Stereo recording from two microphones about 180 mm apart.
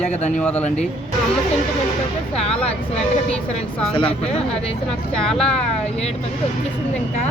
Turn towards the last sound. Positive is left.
turn(degrees=5)  # may be behind; listen again after turning